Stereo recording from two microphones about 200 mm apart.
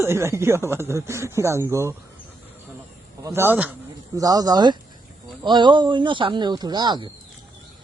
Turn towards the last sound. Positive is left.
turn(degrees=-20)  # may be behind; listen again after turning